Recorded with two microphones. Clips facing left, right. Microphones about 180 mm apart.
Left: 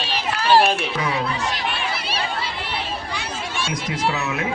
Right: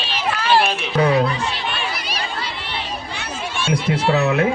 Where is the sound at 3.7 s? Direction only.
30° right (ahead or behind).